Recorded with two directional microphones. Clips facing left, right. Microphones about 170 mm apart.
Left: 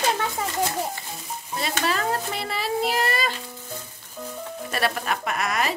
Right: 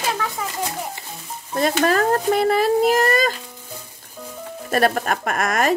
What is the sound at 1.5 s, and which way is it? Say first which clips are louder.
Speech: right 8 dB; 50° right (ahead or behind).